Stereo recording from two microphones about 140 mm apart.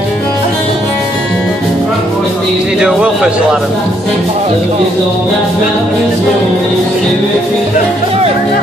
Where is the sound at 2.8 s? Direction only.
5° right (ahead or behind).